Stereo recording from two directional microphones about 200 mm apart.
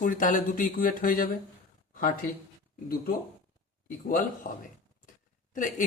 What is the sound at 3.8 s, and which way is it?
Speech, 45° left (ahead or behind).